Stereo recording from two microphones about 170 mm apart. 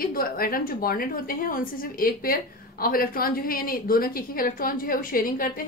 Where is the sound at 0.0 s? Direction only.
60° left (ahead or behind).